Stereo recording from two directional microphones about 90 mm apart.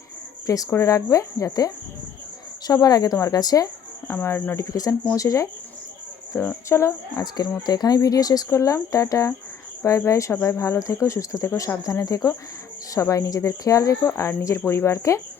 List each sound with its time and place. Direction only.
0.4 s a woman's voice: 40° left (ahead or behind)
4.1 s speech: 30° left (ahead or behind)
4.5 s speech: 40° left (ahead or behind)
6.7 s speech: 30° left (ahead or behind)
7.2 s a woman's voice: 40° left (ahead or behind)